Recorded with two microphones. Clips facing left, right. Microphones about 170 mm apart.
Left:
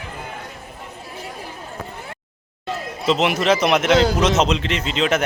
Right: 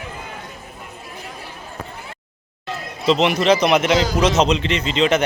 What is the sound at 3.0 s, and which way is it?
A man's voice, 5° left (ahead or behind).